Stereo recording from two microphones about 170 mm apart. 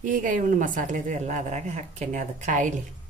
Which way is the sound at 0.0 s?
50° right (ahead or behind).